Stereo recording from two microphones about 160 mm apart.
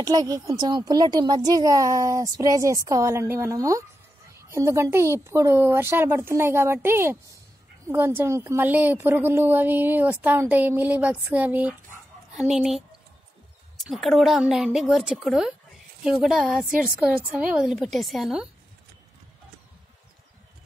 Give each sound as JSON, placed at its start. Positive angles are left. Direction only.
{"t": 0.0, "sound": "a child's voice", "side_deg": -25}